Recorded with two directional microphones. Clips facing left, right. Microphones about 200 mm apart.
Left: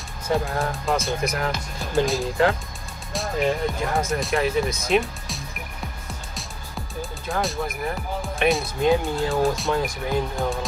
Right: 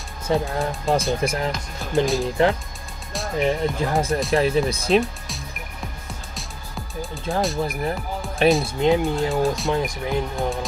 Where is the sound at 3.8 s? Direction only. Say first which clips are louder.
Right 2 dB; 30° right (ahead or behind).